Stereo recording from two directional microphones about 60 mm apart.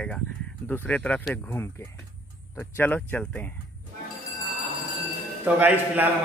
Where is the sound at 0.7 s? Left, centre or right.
Left.